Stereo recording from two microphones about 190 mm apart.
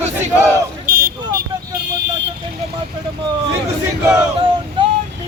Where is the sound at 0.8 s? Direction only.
50° right (ahead or behind).